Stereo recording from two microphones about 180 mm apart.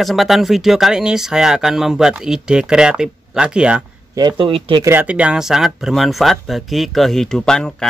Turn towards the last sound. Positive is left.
turn(degrees=5)  # may be behind; listen again after turning